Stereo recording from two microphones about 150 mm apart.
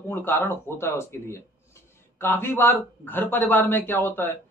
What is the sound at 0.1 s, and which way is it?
A man's voice, 15° left (ahead or behind).